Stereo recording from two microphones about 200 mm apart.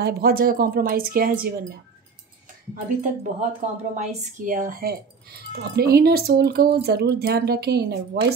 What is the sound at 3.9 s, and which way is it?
A woman's voice, 35° right (ahead or behind).